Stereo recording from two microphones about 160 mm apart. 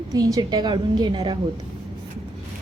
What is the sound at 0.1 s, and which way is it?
A woman's voice, 25° right (ahead or behind).